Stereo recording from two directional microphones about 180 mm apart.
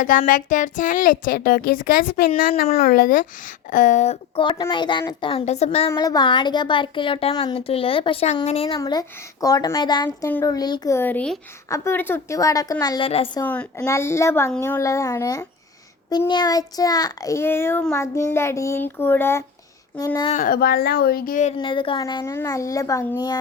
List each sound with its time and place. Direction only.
0.0 s speech: 45° left (ahead or behind)
4.7 s a child's voice: 25° left (ahead or behind)
5.9 s a child's voice: 20° left (ahead or behind)
8.8 s a child's voice: 20° left (ahead or behind)
13.1 s a woman's voice: 35° left (ahead or behind)
13.4 s a child's voice: 10° left (ahead or behind)
20.3 s speech: 50° left (ahead or behind)
21.6 s a child's voice: 25° left (ahead or behind)